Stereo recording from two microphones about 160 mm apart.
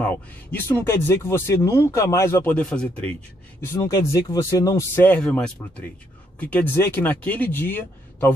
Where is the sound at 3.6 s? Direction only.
20° left (ahead or behind).